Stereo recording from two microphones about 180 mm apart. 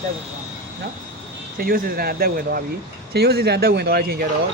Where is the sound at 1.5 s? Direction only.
55° right (ahead or behind).